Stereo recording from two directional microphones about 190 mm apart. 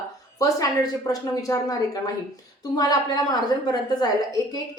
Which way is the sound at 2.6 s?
20° left (ahead or behind).